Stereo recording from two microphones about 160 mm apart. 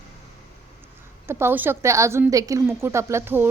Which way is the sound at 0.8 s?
15° right (ahead or behind).